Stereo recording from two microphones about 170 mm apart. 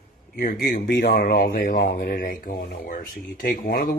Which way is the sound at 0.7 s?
85° left.